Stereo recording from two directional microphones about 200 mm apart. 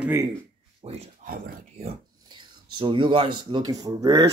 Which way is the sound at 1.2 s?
45° right (ahead or behind).